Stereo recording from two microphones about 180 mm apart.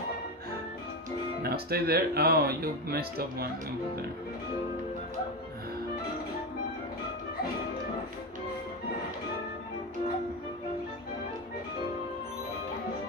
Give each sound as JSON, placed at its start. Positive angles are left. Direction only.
{"t": 1.4, "sound": "speech", "side_deg": -60}